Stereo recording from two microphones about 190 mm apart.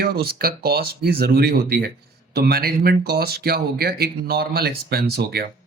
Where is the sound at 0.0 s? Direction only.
55° right (ahead or behind).